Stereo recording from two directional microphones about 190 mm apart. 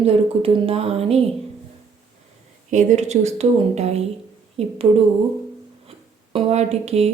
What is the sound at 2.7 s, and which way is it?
Speech, 40° right (ahead or behind).